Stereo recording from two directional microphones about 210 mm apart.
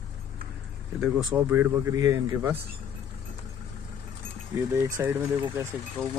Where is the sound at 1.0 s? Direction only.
10° right (ahead or behind).